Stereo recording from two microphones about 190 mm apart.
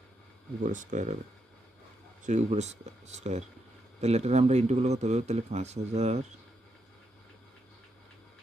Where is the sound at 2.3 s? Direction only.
35° right (ahead or behind).